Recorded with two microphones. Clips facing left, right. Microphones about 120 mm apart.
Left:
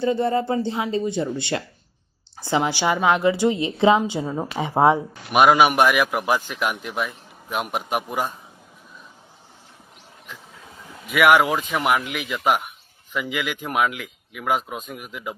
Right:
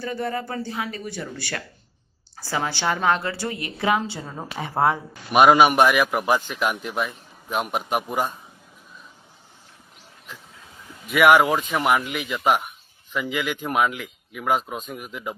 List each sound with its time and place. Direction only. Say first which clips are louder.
0.0 s a woman's voice: left 7 dB; 25° left (ahead or behind)
5.3 s speech: right 1 dB; centre (ahead or behind)
11.1 s speech: right 1 dB; centre (ahead or behind)